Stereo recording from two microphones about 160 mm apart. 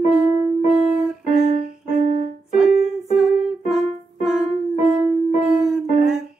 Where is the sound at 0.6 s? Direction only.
5° right (ahead or behind).